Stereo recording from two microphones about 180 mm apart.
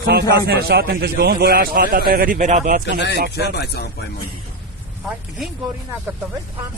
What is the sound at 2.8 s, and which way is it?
Speech, 75° left (ahead or behind).